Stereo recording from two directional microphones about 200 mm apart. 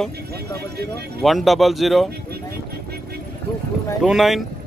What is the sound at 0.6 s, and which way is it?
Speech, 55° right (ahead or behind).